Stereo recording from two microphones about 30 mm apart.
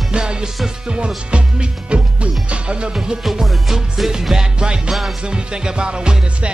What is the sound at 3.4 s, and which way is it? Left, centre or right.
Music, centre.